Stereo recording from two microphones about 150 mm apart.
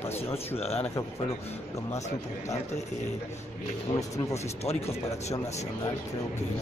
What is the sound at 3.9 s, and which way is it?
Speech, 20° left (ahead or behind).